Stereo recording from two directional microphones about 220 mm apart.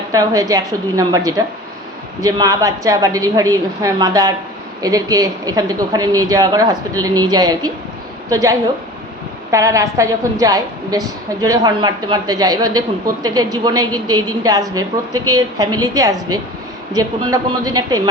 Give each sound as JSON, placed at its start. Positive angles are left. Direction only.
{"t": 0.1, "sound": "a woman's voice", "side_deg": -15}